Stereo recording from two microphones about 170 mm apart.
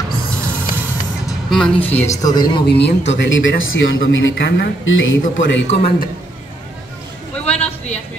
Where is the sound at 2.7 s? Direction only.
85° left.